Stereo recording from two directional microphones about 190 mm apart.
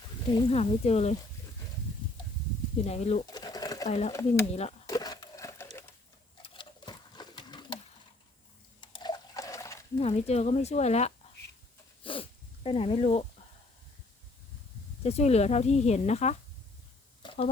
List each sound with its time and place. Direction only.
0.4 s speech: 35° left (ahead or behind)
2.8 s speech: 35° left (ahead or behind)
3.2 s pigeon: 20° left (ahead or behind)
3.8 s speech: 35° left (ahead or behind)
4.1 s speech: 15° left (ahead or behind)
4.9 s a sound: 20° left (ahead or behind)
6.4 s sewing machine: 25° left (ahead or behind)
8.8 s water: 25° left (ahead or behind)
10.0 s speech: 35° left (ahead or behind)
12.0 s dog: 30° left (ahead or behind)
15.0 s speech: 35° left (ahead or behind)
17.2 s a sound: 30° left (ahead or behind)